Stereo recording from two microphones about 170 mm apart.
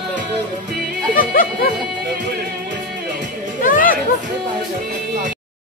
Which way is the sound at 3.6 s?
55° left (ahead or behind).